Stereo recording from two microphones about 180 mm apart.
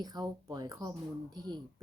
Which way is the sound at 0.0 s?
20° right (ahead or behind).